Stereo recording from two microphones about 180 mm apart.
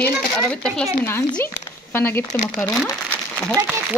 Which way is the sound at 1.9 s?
10° left (ahead or behind).